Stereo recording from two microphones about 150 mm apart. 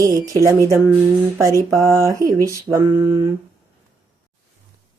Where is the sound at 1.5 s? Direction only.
20° right (ahead or behind).